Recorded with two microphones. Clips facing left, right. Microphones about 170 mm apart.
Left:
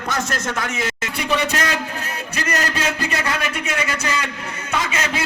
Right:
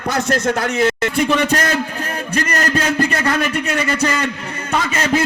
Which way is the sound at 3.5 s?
55° right (ahead or behind).